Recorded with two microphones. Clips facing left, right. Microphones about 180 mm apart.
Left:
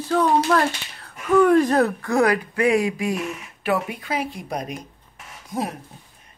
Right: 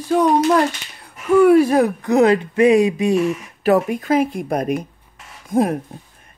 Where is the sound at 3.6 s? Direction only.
45° right (ahead or behind).